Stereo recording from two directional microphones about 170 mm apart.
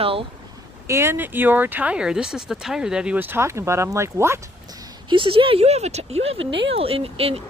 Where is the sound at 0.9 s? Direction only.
15° right (ahead or behind).